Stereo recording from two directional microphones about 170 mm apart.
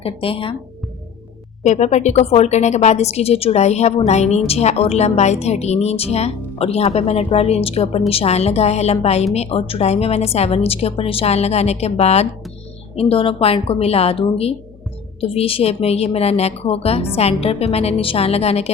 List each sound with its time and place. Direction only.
0.0 s a woman's voice: 35° left (ahead or behind)
1.6 s a woman's voice: 40° left (ahead or behind)